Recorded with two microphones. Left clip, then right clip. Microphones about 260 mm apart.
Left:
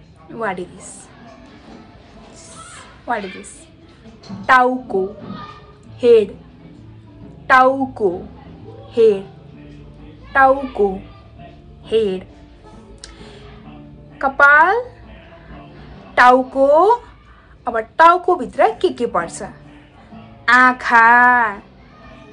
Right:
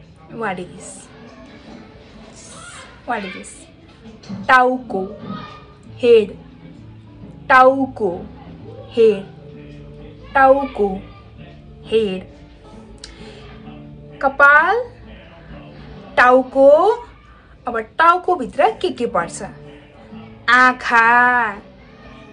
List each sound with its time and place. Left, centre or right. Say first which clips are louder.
0.3 s a woman's voice: left 1 dB; centre
3.1 s a woman's voice: left 1 dB; centre
4.5 s a woman's voice: even; centre
5.9 s a woman's voice: even; centre
7.4 s a woman's voice: right 1 dB; centre
10.3 s a woman's voice: right 1 dB; centre
13.0 s music: right 1 dB; centre
14.1 s a woman's voice: even; centre
16.2 s a woman's voice: even; centre